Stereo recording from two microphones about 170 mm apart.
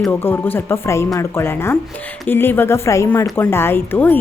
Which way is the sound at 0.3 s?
10° left (ahead or behind).